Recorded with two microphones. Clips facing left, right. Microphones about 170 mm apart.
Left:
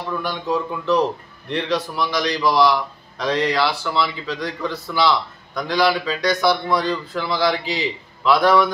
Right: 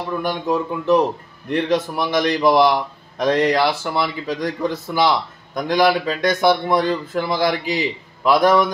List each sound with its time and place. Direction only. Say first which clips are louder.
0.2 s a man's voice: right 3 dB; 50° right (ahead or behind)